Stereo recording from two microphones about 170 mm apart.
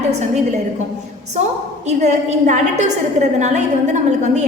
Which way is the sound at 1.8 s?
45° right (ahead or behind).